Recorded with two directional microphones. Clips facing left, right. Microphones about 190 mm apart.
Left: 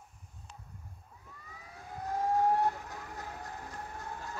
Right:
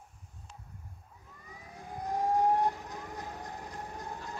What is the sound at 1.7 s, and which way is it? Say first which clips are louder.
Vehicle: right 2 dB; 15° right (ahead or behind).